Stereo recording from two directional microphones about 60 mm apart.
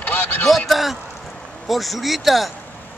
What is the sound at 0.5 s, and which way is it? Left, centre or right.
A man's voice, centre.